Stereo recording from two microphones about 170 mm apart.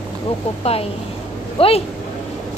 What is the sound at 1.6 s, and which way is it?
Speech, 35° left (ahead or behind).